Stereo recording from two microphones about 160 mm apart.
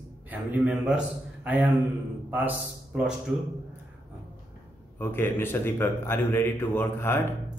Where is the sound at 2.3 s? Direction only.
10° right (ahead or behind).